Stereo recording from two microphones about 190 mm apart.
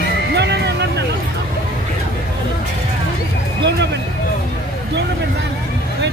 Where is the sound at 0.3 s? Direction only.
65° right (ahead or behind).